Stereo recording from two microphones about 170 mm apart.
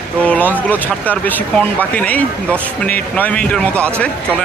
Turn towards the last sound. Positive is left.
turn(degrees=5)  # may be behind; listen again after turning